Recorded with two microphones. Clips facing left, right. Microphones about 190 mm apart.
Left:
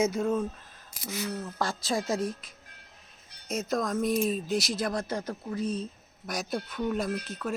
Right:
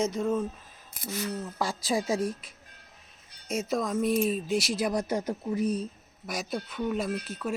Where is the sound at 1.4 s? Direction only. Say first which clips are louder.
Even; 10° right (ahead or behind).